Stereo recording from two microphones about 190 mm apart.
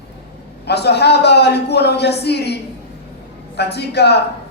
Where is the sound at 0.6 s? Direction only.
60° left (ahead or behind).